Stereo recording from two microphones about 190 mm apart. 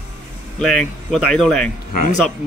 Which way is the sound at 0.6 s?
5° left (ahead or behind).